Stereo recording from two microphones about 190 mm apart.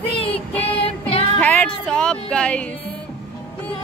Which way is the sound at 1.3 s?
5° left (ahead or behind).